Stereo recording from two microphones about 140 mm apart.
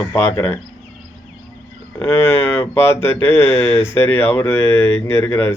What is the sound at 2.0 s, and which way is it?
Speech, 15° left (ahead or behind).